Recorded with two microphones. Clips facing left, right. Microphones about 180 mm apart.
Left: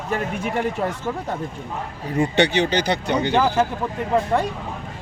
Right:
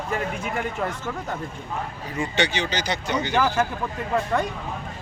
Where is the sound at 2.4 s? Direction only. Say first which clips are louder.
Left 5 dB; 60° left (ahead or behind).